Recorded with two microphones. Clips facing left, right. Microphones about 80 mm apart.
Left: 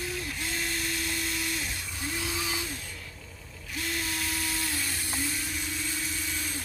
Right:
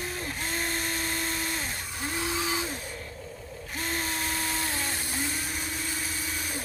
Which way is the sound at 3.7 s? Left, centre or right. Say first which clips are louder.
Right 1 dB; right.